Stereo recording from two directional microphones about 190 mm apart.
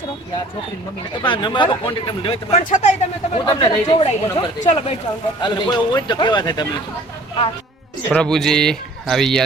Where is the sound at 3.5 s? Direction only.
20° left (ahead or behind).